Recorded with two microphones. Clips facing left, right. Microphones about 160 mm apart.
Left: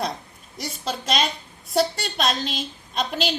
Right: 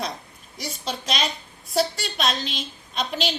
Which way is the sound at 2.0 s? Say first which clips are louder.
Left 1 dB; 50° left (ahead or behind).